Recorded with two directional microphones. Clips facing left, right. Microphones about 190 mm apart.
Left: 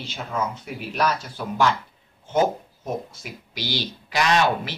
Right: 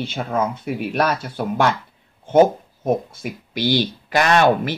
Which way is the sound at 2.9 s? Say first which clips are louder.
Right 9 dB; 55° right (ahead or behind).